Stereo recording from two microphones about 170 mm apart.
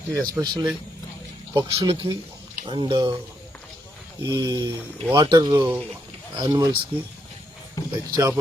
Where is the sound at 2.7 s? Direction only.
30° right (ahead or behind).